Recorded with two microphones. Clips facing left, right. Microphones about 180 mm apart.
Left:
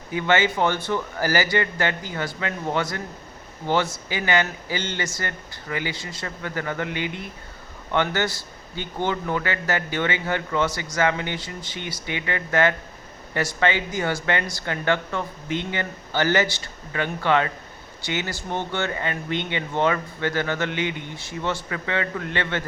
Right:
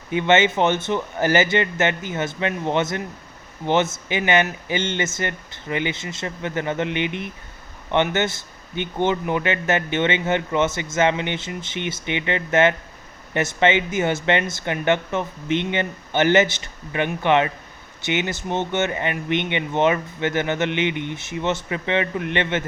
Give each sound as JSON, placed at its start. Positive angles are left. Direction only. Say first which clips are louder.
{"t": 0.1, "sound": "speech", "louder": "right 4 dB", "side_deg": -20}